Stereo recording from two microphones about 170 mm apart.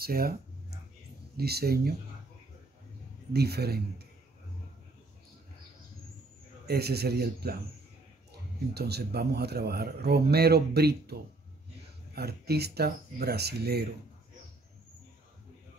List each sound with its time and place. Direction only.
0.0 s a sound: 60° right (ahead or behind)
1.3 s speech: 65° right (ahead or behind)
3.3 s speech: 70° right (ahead or behind)
6.7 s speech: 70° right (ahead or behind)
8.7 s speech: 70° right (ahead or behind)
12.2 s speech: 70° right (ahead or behind)